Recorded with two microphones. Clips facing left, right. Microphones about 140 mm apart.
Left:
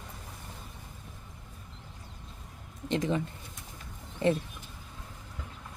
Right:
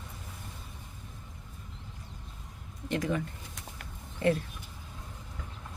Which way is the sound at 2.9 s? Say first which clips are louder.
Left 2 dB; 20° left (ahead or behind).